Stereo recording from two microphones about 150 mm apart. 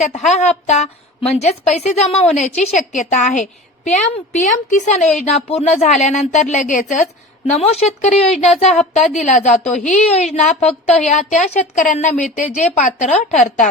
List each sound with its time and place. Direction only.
0.0 s a woman's voice: 50° left (ahead or behind)
7.4 s a woman's voice: 45° left (ahead or behind)
8.7 s a woman's voice: centre (ahead or behind)
9.2 s a woman's voice: 55° left (ahead or behind)